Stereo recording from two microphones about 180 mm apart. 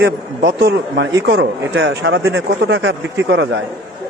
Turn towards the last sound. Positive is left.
turn(degrees=-85)